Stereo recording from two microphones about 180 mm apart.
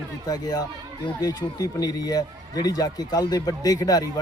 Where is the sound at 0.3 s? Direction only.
20° left (ahead or behind).